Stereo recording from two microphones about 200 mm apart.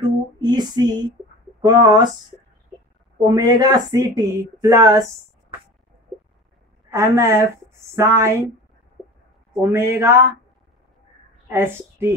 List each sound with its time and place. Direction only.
0.0 s speech: 20° right (ahead or behind)
3.3 s speech: 20° right (ahead or behind)
6.9 s speech: 15° right (ahead or behind)
9.6 s speech: 15° right (ahead or behind)
11.5 s speech: 10° right (ahead or behind)